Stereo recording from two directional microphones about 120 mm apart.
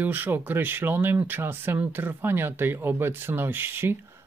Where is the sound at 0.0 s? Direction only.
15° right (ahead or behind).